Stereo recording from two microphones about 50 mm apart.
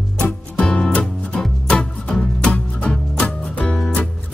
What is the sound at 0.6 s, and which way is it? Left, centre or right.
Music, centre.